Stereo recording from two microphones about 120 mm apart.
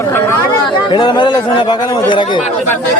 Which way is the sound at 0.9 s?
40° left (ahead or behind).